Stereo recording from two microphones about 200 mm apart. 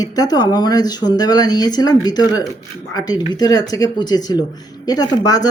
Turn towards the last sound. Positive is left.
turn(degrees=20)  # may be behind; listen again after turning